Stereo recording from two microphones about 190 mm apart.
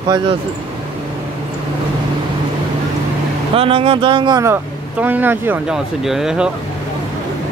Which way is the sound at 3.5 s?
30° right (ahead or behind).